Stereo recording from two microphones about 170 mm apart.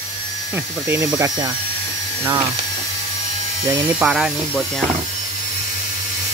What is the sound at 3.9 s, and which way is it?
Speech, 5° right (ahead or behind).